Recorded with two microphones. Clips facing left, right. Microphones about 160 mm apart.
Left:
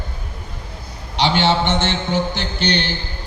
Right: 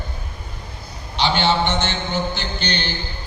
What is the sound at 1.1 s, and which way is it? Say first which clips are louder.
A man's voice: left 2 dB; 75° left (ahead or behind).